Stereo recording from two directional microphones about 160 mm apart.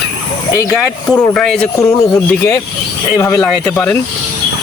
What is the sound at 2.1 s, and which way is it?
Speech, 20° left (ahead or behind).